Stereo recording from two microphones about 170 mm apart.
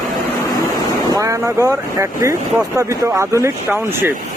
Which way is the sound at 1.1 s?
20° right (ahead or behind).